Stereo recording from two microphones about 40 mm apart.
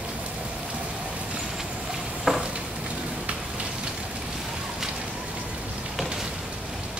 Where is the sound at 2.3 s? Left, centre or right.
Centre.